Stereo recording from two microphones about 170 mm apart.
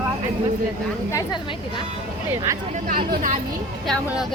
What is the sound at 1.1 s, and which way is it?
Speech, 25° left (ahead or behind).